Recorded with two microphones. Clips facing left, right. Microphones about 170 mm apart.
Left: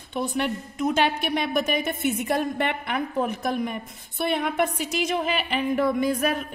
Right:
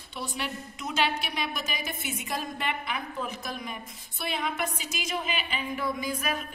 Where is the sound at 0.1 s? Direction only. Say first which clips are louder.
Left 9 dB; 50° left (ahead or behind).